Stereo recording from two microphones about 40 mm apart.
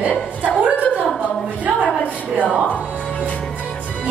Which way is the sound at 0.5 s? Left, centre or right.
Right.